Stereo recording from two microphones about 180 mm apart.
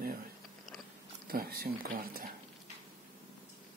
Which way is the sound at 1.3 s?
55° right (ahead or behind).